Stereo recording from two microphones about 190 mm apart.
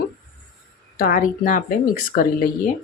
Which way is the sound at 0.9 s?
45° left (ahead or behind).